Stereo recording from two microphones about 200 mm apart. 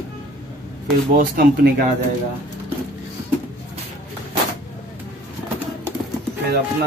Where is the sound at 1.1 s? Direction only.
50° right (ahead or behind).